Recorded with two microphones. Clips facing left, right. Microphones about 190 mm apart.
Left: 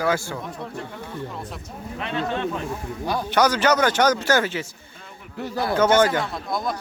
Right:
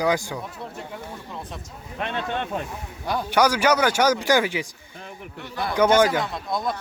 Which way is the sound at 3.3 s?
10° right (ahead or behind).